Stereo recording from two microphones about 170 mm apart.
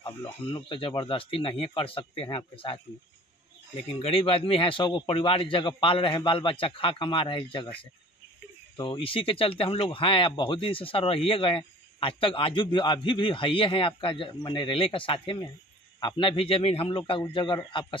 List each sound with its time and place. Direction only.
0.0 s speech: 30° left (ahead or behind)
4.0 s speech: 35° left (ahead or behind)